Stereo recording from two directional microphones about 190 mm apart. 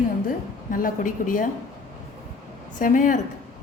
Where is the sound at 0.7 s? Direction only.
45° left (ahead or behind).